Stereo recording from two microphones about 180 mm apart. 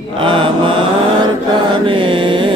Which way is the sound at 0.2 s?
30° right (ahead or behind).